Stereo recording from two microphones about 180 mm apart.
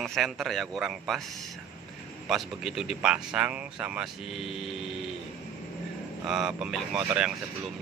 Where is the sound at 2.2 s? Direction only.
Centre (ahead or behind).